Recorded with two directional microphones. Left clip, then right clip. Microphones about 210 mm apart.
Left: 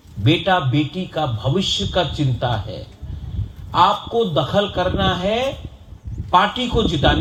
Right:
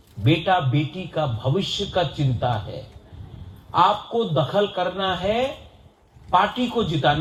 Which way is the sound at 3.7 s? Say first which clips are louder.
Left 3 dB; 50° left (ahead or behind).